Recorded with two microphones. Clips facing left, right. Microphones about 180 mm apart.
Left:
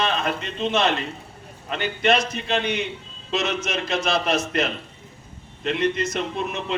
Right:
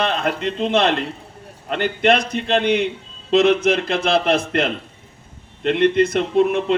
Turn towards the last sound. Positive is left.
turn(degrees=-60)  # may be behind; listen again after turning